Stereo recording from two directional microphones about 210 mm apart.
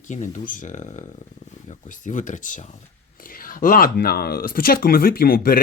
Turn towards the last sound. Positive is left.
turn(degrees=45)  # may be behind; listen again after turning